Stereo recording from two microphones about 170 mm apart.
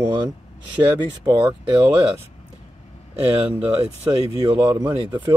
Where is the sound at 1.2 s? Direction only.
30° right (ahead or behind).